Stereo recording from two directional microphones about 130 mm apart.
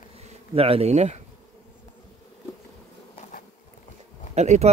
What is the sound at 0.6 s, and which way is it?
Speech, 50° right (ahead or behind).